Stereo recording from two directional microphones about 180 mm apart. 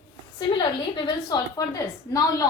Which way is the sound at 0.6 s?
25° left (ahead or behind).